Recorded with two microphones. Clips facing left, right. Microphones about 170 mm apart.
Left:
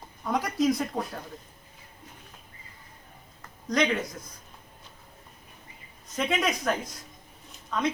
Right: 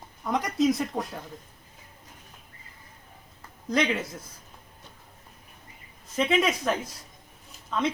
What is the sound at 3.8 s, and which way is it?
Speech, 25° right (ahead or behind).